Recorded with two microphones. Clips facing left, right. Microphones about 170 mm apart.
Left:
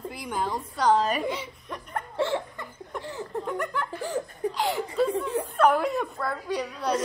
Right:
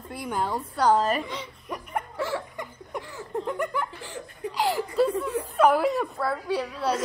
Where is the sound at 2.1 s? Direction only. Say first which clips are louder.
Left 5 dB; 25° left (ahead or behind).